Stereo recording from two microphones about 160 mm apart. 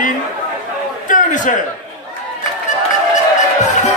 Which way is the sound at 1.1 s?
55° left (ahead or behind).